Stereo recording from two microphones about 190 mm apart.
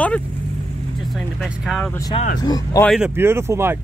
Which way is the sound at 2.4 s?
20° left (ahead or behind).